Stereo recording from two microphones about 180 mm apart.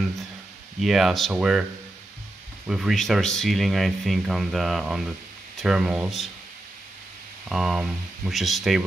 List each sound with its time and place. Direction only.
0.7 s speech: centre (ahead or behind)
7.4 s speech: centre (ahead or behind)